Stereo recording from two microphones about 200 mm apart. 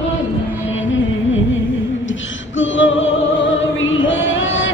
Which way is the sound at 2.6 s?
70° left (ahead or behind).